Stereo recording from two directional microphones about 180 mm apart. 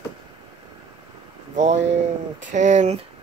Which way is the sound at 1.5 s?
40° right (ahead or behind).